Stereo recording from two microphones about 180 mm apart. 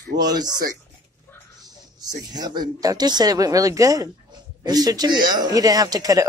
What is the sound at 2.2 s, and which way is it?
Speech, 20° right (ahead or behind).